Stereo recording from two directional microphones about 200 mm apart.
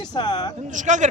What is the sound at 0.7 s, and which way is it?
Speech, 40° right (ahead or behind).